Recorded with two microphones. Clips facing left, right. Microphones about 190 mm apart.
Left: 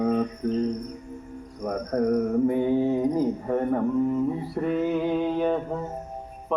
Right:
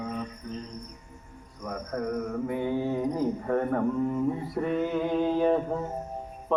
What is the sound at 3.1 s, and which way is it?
Cricket, 10° left (ahead or behind).